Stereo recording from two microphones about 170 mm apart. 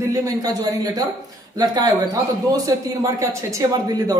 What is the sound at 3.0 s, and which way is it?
Speech, 20° right (ahead or behind).